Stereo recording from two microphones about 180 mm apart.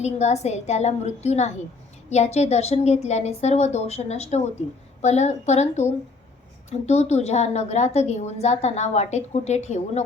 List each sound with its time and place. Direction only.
0.0 s a woman's voice: 40° left (ahead or behind)